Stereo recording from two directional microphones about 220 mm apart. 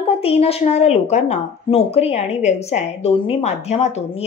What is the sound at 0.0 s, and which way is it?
Speech, 25° left (ahead or behind).